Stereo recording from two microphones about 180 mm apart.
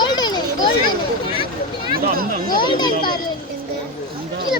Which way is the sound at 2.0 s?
55° right (ahead or behind).